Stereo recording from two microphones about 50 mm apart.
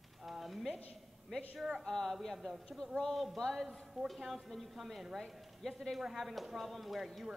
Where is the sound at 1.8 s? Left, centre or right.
Centre.